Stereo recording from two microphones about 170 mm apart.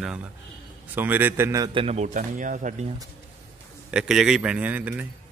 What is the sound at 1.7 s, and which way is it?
Speech, 40° right (ahead or behind).